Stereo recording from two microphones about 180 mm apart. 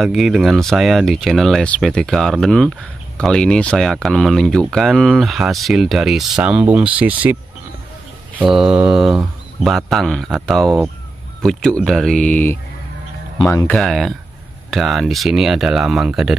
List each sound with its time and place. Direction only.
0.0 s speech: centre (ahead or behind)
8.4 s speech: 5° right (ahead or behind); by 13.7 s 15° left (ahead or behind)
13.7 s speech: centre (ahead or behind)